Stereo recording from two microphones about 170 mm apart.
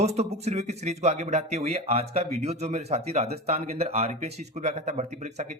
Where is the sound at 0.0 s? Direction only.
40° right (ahead or behind).